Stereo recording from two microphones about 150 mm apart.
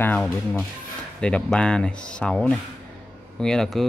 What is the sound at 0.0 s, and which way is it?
Speech, 10° left (ahead or behind).